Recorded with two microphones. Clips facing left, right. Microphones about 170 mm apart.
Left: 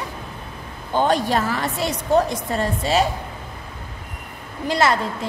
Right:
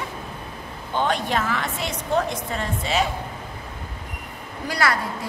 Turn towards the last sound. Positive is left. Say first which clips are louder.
# left 4 dB
turn(degrees=25)  # may be behind; listen again after turning